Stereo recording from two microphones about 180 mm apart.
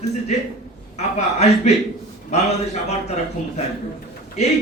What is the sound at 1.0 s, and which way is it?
A man's voice, 35° left (ahead or behind).